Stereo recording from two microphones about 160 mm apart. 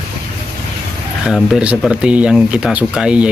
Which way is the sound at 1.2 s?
Centre (ahead or behind).